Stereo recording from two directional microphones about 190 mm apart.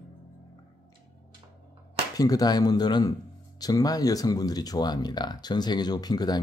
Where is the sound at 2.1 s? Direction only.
20° left (ahead or behind).